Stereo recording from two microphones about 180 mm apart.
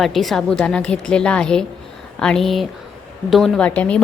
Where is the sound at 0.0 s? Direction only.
Centre (ahead or behind).